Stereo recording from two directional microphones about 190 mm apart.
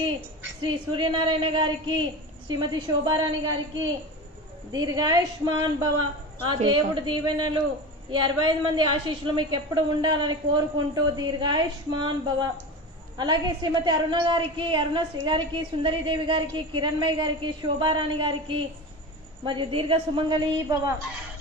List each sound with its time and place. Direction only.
0.6 s a woman's voice: 25° right (ahead or behind)